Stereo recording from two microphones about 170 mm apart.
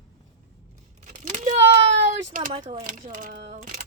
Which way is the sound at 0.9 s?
45° right (ahead or behind).